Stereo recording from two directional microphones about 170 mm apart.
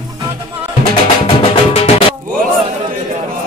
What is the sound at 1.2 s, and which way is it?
Music, 35° left (ahead or behind).